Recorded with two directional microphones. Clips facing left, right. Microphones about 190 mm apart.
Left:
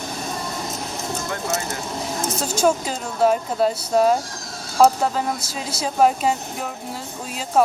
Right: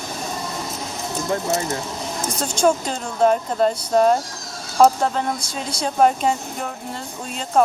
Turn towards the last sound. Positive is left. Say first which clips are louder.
# right 1 dB
turn(degrees=5)  # may be behind; listen again after turning